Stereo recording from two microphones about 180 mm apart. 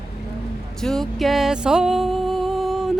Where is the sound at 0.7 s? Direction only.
Centre (ahead or behind).